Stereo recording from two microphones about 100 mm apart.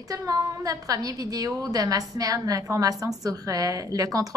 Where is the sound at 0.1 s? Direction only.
35° right (ahead or behind).